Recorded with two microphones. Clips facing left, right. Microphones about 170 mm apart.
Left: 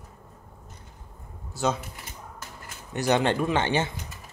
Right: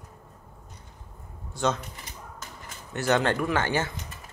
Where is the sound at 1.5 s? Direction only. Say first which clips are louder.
Even; 5° left (ahead or behind).